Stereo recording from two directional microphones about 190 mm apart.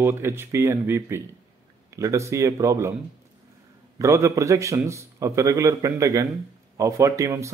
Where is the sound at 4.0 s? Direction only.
15° right (ahead or behind).